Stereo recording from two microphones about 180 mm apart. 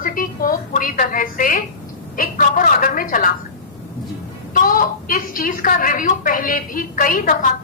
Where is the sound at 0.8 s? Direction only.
50° left (ahead or behind).